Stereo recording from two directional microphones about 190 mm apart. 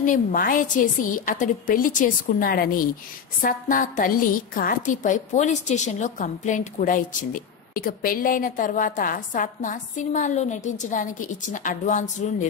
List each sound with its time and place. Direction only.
0.0 s a woman's voice: 45° left (ahead or behind)